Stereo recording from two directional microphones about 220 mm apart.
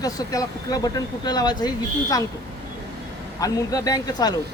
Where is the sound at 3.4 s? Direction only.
15° left (ahead or behind).